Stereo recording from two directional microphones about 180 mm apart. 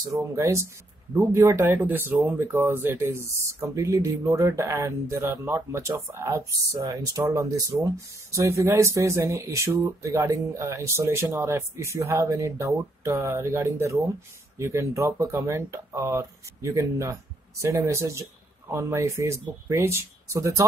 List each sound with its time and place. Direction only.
0.1 s speech: 15° right (ahead or behind)